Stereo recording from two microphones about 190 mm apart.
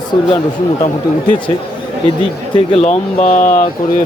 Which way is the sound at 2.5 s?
35° left (ahead or behind).